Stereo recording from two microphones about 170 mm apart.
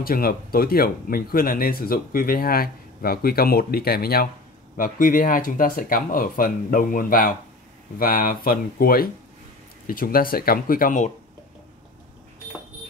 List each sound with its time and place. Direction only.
0.0 s speech: 60° left (ahead or behind)